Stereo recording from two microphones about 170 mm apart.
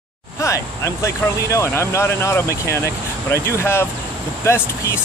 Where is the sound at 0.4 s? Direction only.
15° left (ahead or behind).